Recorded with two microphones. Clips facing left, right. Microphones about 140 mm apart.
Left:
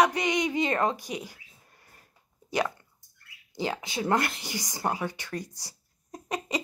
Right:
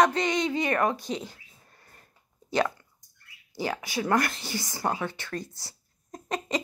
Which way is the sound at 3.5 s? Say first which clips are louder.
Right 1 dB; 20° left (ahead or behind).